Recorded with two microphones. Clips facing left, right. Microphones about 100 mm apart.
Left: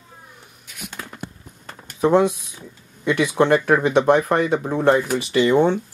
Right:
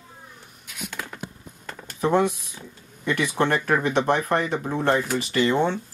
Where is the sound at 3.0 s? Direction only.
15° left (ahead or behind).